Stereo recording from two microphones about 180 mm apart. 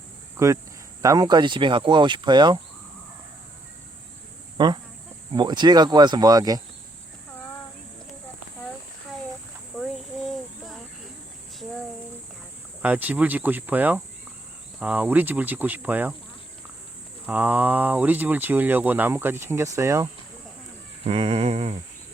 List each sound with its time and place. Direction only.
0.3 s speech: 15° right (ahead or behind)
4.5 s speech: 25° right (ahead or behind)
9.7 s a sound: centre (ahead or behind)
12.8 s speech: 10° right (ahead or behind)
17.2 s speech: 10° right (ahead or behind)
21.0 s speech: 35° right (ahead or behind)